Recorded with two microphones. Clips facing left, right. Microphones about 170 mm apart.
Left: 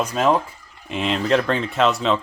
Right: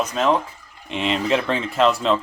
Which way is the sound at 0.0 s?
10° left (ahead or behind).